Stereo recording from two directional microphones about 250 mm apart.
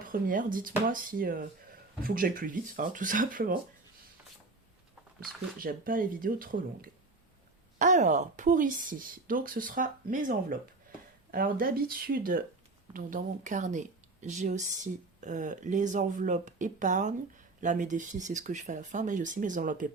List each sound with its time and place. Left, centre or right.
0.0 s a woman's voice: right
5.5 s a woman's voice: right